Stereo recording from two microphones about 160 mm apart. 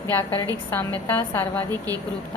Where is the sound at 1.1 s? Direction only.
15° left (ahead or behind).